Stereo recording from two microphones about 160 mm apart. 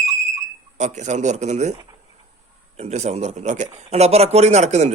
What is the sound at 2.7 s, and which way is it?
Speech, 45° right (ahead or behind).